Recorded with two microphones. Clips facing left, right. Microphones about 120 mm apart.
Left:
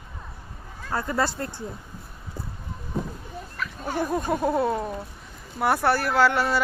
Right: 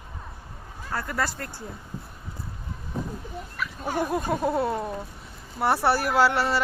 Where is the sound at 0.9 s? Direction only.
25° left (ahead or behind).